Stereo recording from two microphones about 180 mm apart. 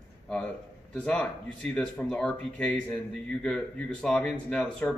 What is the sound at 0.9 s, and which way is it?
Speech, 5° left (ahead or behind).